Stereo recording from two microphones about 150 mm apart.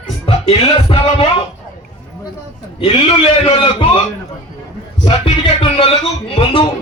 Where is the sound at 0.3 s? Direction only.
40° left (ahead or behind).